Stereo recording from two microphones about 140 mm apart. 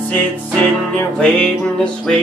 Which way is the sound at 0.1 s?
10° left (ahead or behind).